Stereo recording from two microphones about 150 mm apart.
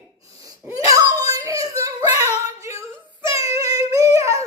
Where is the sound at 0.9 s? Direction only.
25° right (ahead or behind).